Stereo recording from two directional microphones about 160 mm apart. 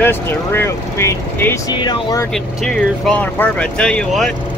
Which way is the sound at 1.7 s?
25° left (ahead or behind).